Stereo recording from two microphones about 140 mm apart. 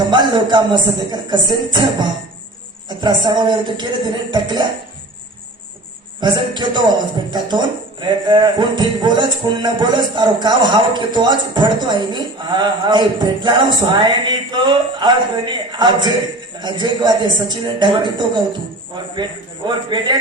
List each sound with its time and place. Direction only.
0.1 s speech: 30° right (ahead or behind)
6.1 s speech: 35° right (ahead or behind)
19.6 s speech: 30° right (ahead or behind)